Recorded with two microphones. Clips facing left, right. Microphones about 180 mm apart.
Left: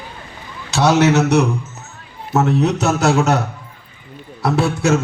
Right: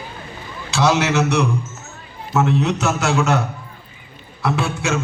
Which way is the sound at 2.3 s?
40° left (ahead or behind).